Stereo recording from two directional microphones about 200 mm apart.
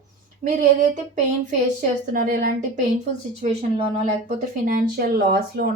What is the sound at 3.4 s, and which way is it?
Speech, 35° right (ahead or behind).